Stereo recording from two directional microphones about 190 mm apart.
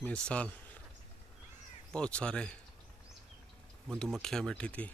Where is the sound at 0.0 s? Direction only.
5° left (ahead or behind).